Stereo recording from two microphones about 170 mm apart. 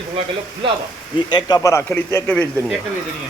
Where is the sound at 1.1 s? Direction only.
25° left (ahead or behind).